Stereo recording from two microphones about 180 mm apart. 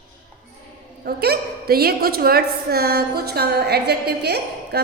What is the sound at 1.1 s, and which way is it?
A woman's voice, 60° right (ahead or behind).